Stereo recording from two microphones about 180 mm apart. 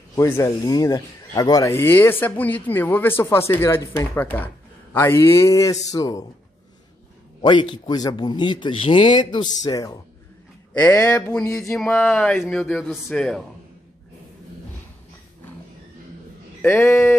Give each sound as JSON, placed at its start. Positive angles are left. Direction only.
{"t": 0.1, "sound": "a man's voice", "side_deg": 15}
{"t": 7.4, "sound": "a man's voice", "side_deg": 25}
{"t": 11.7, "sound": "speech", "side_deg": 5}
{"t": 16.6, "sound": "speech", "side_deg": 10}